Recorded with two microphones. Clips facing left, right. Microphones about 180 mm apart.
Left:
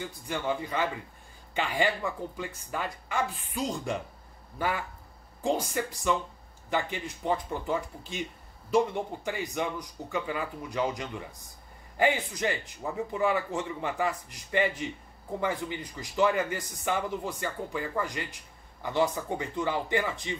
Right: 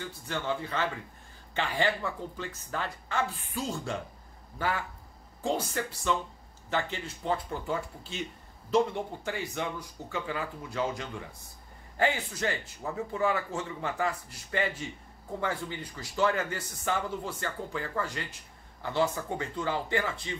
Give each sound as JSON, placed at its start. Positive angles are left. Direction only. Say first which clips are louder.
{"t": 0.0, "sound": "a man's voice", "louder": "left 2 dB", "side_deg": 15}